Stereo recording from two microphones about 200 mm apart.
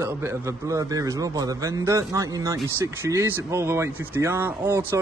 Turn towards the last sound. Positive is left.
turn(degrees=-10)  # may be behind; listen again after turning